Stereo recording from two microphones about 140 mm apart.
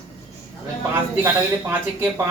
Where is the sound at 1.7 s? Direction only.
15° right (ahead or behind).